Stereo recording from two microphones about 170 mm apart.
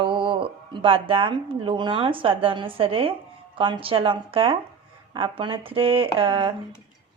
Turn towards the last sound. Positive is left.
turn(degrees=-30)  # may be behind; listen again after turning